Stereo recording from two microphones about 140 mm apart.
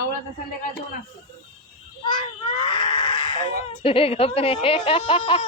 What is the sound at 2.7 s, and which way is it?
Speech, 35° left (ahead or behind).